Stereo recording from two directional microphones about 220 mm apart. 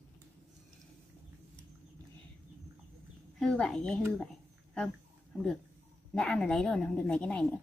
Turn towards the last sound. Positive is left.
turn(degrees=5)  # may be behind; listen again after turning